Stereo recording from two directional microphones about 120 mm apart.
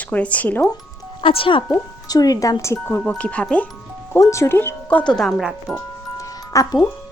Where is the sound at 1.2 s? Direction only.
50° left (ahead or behind).